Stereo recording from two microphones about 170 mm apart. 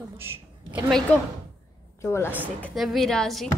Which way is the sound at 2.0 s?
15° left (ahead or behind).